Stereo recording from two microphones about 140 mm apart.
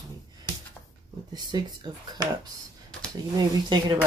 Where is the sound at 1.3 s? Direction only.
30° right (ahead or behind).